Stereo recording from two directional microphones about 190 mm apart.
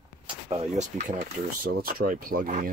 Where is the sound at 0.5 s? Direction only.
35° right (ahead or behind).